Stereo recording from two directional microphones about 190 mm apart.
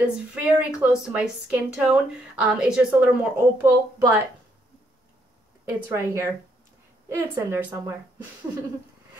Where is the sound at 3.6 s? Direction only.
15° right (ahead or behind).